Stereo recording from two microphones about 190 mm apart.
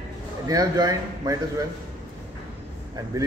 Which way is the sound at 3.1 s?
20° right (ahead or behind).